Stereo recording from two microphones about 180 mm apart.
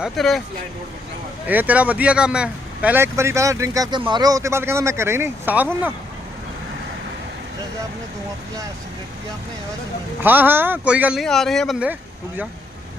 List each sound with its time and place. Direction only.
0.0 s speech: centre (ahead or behind)
1.5 s speech: 10° right (ahead or behind)
10.2 s speech: 10° right (ahead or behind)